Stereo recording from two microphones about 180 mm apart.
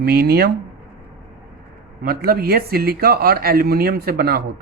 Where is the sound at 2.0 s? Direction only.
55° right (ahead or behind).